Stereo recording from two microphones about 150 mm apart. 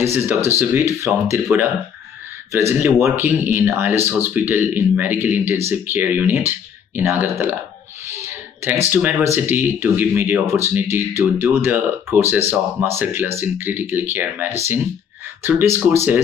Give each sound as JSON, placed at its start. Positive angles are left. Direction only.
{"t": 0.0, "sound": "speech", "side_deg": -15}
{"t": 2.7, "sound": "speech", "side_deg": -15}
{"t": 8.1, "sound": "a sound", "side_deg": -20}
{"t": 8.9, "sound": "speech", "side_deg": -15}